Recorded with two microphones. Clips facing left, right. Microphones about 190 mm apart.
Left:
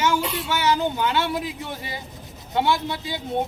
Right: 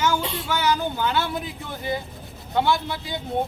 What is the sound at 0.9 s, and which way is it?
Speech, 20° left (ahead or behind).